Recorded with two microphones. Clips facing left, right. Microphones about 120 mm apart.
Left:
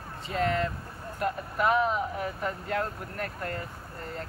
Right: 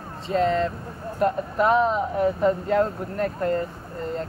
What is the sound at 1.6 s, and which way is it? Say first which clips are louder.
Speech: right 5 dB; 35° right (ahead or behind).